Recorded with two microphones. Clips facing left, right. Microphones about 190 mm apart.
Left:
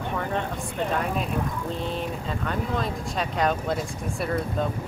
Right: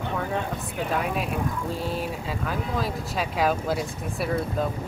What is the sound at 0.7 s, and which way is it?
Speech, 5° right (ahead or behind).